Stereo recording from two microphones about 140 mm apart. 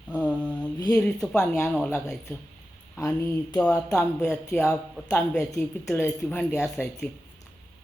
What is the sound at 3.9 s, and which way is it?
Speech, 5° left (ahead or behind).